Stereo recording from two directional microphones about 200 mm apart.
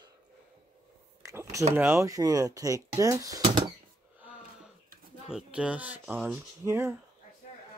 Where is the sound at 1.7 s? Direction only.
15° right (ahead or behind).